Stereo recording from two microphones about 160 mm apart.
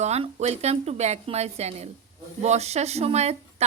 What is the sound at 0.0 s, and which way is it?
A woman's voice, 45° right (ahead or behind).